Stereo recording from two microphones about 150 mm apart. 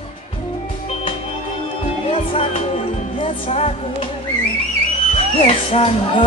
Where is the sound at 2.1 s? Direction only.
40° left (ahead or behind).